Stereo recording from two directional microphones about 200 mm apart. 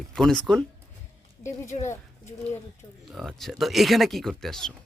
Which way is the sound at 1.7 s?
30° left (ahead or behind).